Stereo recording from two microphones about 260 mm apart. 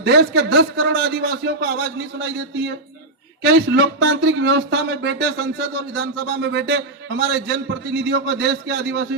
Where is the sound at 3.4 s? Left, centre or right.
Right.